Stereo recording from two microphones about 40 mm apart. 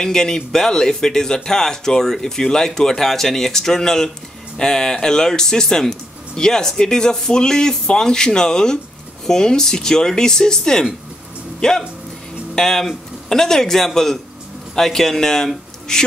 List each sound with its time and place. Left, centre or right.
0.0 s a man's voice: centre